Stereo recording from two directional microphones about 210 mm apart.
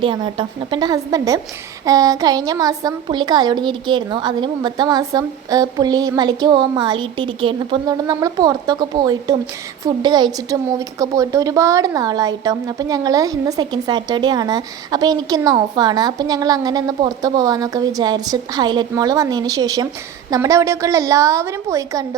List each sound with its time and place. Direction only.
0.0 s a woman's voice: 25° right (ahead or behind)